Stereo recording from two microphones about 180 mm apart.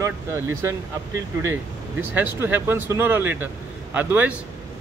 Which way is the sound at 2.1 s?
10° right (ahead or behind).